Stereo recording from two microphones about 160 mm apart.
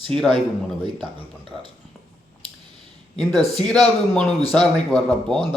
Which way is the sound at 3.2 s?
Centre (ahead or behind).